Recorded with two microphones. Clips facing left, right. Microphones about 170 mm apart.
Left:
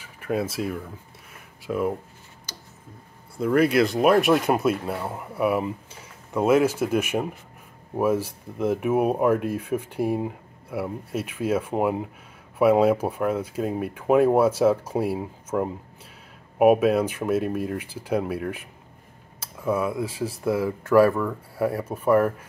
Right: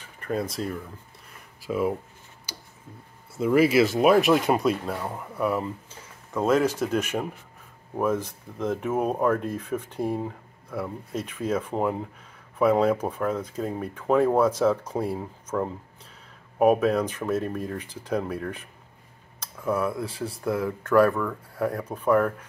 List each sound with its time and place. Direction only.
0.0 s speech: 5° left (ahead or behind)
2.5 s a sound: 10° right (ahead or behind)
3.3 s speech: 5° right (ahead or behind)